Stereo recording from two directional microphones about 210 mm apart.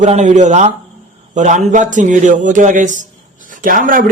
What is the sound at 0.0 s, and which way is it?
Speech, 35° right (ahead or behind).